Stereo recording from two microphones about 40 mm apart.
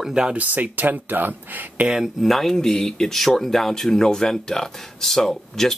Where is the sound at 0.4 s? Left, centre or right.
Right.